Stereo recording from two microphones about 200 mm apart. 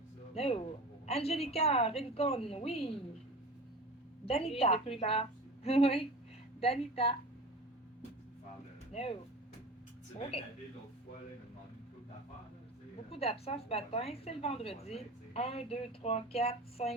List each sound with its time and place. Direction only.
0.3 s a woman's voice: 30° left (ahead or behind)
4.3 s a woman's voice: 30° left (ahead or behind)
8.9 s speech: 30° left (ahead or behind)
13.1 s a woman's voice: 30° left (ahead or behind)